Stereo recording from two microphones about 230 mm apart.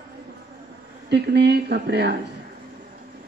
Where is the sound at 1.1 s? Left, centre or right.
Right.